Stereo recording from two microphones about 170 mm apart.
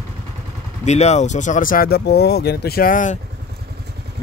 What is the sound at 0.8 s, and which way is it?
Speech, 40° left (ahead or behind).